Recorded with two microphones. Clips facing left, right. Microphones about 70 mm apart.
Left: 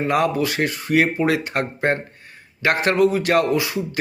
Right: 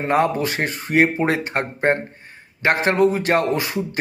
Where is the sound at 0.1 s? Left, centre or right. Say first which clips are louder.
Right 3 dB; right.